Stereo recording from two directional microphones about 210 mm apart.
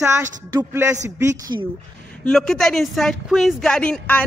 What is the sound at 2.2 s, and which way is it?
Speech, centre (ahead or behind).